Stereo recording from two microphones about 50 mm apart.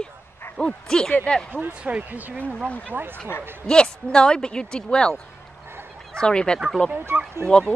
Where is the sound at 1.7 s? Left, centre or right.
Right.